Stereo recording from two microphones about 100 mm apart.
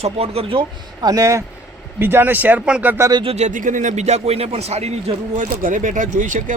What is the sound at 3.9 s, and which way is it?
Speech, 90° right.